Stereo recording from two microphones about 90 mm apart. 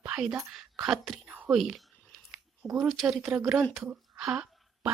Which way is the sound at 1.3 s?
20° right (ahead or behind).